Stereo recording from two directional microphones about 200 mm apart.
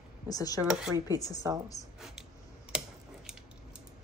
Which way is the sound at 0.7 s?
5° right (ahead or behind).